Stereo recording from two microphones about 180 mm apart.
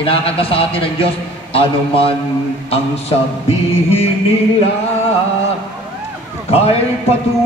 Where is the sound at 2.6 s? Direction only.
35° left (ahead or behind).